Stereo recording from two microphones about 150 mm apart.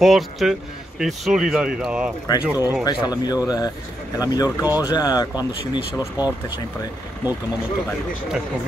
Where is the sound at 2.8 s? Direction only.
25° left (ahead or behind).